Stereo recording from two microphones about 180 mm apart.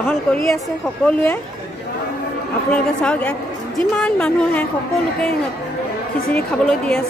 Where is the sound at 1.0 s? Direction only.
10° left (ahead or behind).